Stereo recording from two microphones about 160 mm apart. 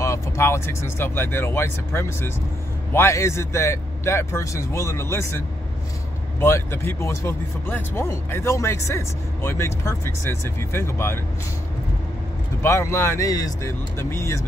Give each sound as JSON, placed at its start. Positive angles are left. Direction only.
{"t": 0.0, "sound": "speech", "side_deg": 15}
{"t": 6.4, "sound": "speech", "side_deg": 15}
{"t": 12.6, "sound": "speech", "side_deg": 15}